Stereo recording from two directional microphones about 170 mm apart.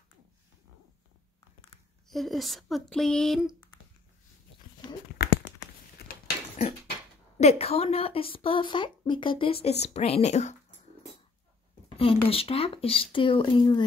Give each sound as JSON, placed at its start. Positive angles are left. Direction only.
{"t": 2.0, "sound": "speech", "side_deg": 0}
{"t": 5.9, "sound": "a sound", "side_deg": 65}
{"t": 7.3, "sound": "a woman's voice", "side_deg": 40}
{"t": 12.0, "sound": "a woman's voice", "side_deg": 35}